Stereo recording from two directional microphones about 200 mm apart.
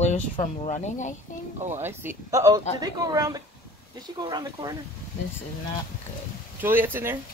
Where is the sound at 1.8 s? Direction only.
10° right (ahead or behind).